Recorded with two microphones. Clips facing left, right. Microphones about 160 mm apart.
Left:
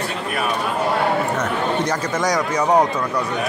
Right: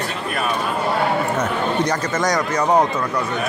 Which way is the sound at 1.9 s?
10° left (ahead or behind).